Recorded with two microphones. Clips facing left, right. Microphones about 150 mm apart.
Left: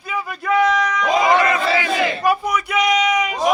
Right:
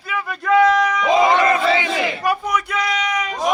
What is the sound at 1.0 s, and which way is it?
Crowd, 25° right (ahead or behind).